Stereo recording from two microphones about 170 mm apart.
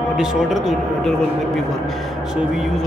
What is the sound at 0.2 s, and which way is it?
Speech, 5° right (ahead or behind).